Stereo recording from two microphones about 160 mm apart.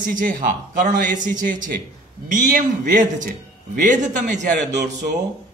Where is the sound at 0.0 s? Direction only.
55° right (ahead or behind).